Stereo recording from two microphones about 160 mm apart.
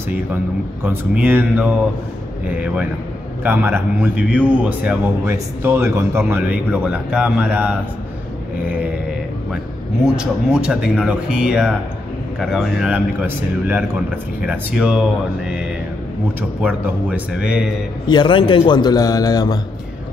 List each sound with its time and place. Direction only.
0.8 s a man's voice: 10° right (ahead or behind)
10.1 s speech: 5° right (ahead or behind)
16.3 s a man's voice: 10° right (ahead or behind)
18.0 s a man's voice: 30° left (ahead or behind)